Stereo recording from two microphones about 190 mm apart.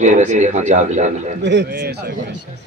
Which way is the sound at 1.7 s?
55° right (ahead or behind).